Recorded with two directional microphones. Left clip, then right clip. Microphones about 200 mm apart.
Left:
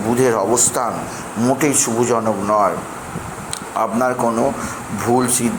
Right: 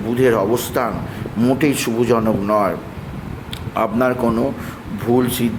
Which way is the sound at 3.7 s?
35° right (ahead or behind).